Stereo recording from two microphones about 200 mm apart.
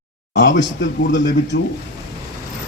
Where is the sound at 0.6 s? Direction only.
65° left (ahead or behind).